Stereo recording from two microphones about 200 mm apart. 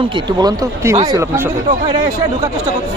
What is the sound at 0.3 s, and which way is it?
Speech, 20° right (ahead or behind).